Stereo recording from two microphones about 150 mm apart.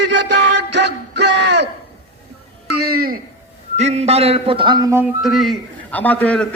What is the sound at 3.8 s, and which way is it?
Music, 45° right (ahead or behind).